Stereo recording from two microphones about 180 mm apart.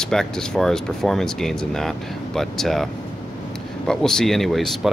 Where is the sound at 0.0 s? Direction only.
5° left (ahead or behind).